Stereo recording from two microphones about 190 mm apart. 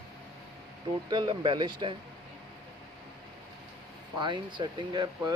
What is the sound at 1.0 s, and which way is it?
Speech, 25° right (ahead or behind).